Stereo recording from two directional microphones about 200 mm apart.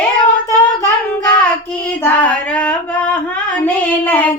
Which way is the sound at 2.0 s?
10° left (ahead or behind).